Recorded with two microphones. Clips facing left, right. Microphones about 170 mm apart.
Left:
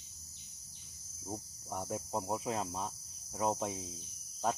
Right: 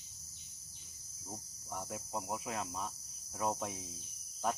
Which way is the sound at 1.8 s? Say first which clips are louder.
Left 5 dB; 30° left (ahead or behind).